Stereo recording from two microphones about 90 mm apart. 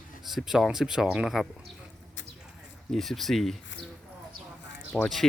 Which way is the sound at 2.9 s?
Centre (ahead or behind).